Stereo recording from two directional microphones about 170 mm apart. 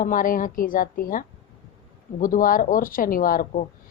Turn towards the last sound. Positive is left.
turn(degrees=55)  # may be behind; listen again after turning